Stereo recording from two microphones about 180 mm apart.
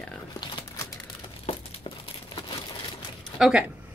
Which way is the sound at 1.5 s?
35° left (ahead or behind).